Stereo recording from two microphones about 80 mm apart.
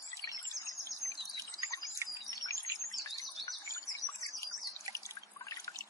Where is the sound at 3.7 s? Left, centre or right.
Left.